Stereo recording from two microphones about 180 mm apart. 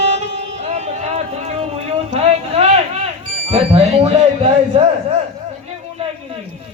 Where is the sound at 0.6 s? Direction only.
35° right (ahead or behind).